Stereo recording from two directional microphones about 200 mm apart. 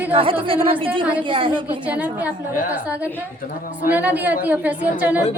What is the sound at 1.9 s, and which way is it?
Speech, 5° right (ahead or behind).